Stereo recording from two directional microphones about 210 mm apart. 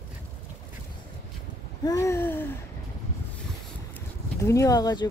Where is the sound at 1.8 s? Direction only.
15° left (ahead or behind).